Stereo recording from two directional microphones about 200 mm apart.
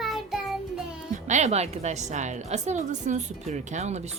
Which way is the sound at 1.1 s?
35° right (ahead or behind).